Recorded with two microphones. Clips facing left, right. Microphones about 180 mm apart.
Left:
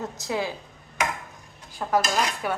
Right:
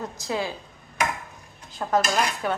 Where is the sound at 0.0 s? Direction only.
20° left (ahead or behind).